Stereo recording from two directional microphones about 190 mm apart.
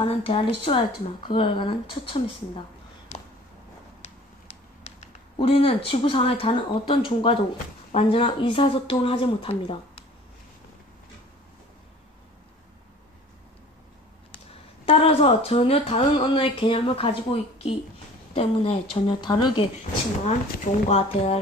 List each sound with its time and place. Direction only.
0.0 s speech: 30° left (ahead or behind)
4.0 s a sound: 35° left (ahead or behind)
7.9 s speech: 30° left (ahead or behind)
14.9 s speech: 30° left (ahead or behind)
20.2 s speech: 35° left (ahead or behind)